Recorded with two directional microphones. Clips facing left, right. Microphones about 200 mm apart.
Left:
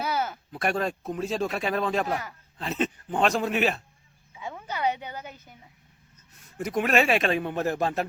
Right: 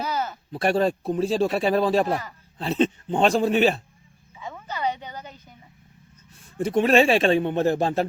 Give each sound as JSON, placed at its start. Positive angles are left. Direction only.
{"t": 0.0, "sound": "a sound", "side_deg": 10}
{"t": 0.5, "sound": "speech", "side_deg": -30}
{"t": 4.4, "sound": "speech", "side_deg": 10}
{"t": 6.6, "sound": "speech", "side_deg": -30}